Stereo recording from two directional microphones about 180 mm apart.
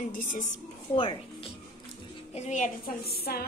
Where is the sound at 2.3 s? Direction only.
40° left (ahead or behind).